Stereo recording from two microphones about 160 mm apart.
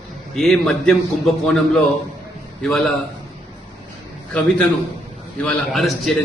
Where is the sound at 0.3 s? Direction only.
5° left (ahead or behind).